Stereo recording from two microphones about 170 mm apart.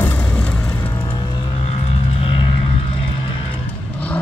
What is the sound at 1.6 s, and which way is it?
Vehicle, 40° left (ahead or behind).